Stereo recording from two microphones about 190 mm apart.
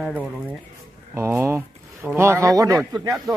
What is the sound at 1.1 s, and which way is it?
Speech, 15° right (ahead or behind).